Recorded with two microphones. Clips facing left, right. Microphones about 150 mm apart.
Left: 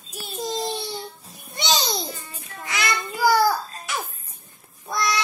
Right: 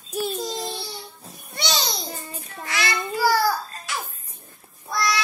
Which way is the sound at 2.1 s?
40° right (ahead or behind).